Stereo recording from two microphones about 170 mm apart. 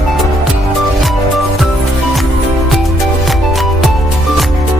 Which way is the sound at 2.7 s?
Centre (ahead or behind).